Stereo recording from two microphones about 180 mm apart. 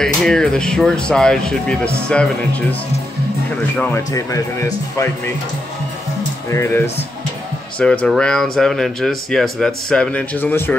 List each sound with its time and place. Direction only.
0.0 s speech: 5° left (ahead or behind)
3.7 s speech: 10° left (ahead or behind)
4.1 s speech: 20° left (ahead or behind)
6.5 s speech: 15° left (ahead or behind)
7.8 s speech: 5° left (ahead or behind)